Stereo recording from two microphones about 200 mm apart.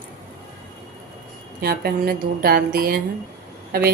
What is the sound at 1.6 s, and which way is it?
Speech, 50° right (ahead or behind).